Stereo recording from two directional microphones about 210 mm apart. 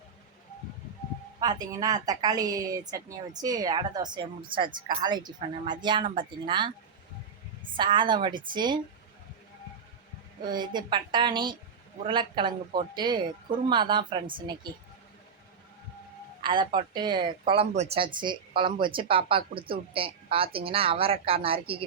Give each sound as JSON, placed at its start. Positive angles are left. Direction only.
{"t": 1.4, "sound": "a woman's voice", "side_deg": -20}
{"t": 7.8, "sound": "a woman's voice", "side_deg": -20}
{"t": 10.4, "sound": "a woman's voice", "side_deg": -20}
{"t": 16.4, "sound": "a woman's voice", "side_deg": -20}